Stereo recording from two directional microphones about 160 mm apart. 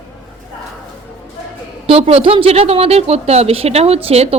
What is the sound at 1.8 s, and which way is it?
Speech, 35° right (ahead or behind).